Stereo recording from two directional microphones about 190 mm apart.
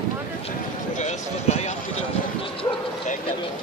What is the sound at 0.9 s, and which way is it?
Speech, 35° left (ahead or behind).